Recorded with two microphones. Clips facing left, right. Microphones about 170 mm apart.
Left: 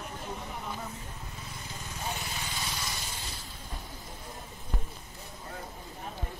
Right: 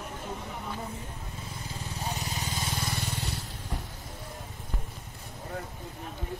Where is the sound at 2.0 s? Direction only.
40° right (ahead or behind); by 3.8 s 70° right (ahead or behind).